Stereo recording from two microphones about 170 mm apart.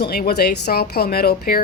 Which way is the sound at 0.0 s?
65° left (ahead or behind).